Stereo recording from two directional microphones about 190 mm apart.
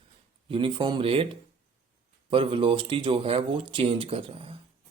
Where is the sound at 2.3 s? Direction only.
30° right (ahead or behind).